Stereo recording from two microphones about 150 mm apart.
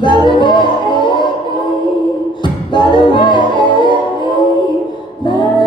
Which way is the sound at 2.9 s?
30° left (ahead or behind).